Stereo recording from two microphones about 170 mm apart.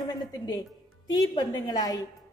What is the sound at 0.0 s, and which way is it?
A woman's voice, 25° left (ahead or behind).